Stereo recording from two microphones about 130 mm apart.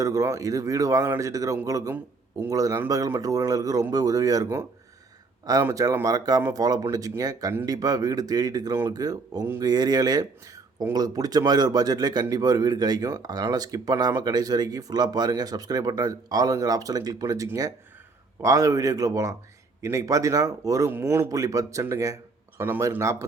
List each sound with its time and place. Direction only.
0.0 s speech: 25° right (ahead or behind)